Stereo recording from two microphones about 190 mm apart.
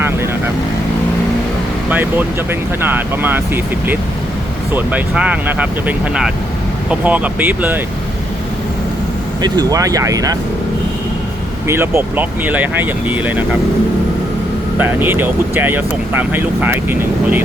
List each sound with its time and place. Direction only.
1.9 s speech: 10° right (ahead or behind)
9.4 s speech: 20° right (ahead or behind)
11.7 s speech: 15° right (ahead or behind)
14.8 s speech: 10° right (ahead or behind)